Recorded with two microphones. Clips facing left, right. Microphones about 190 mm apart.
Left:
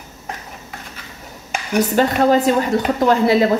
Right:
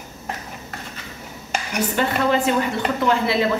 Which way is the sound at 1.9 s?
40° left (ahead or behind).